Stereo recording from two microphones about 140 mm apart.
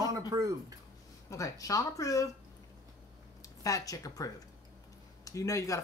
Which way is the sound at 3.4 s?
25° left (ahead or behind).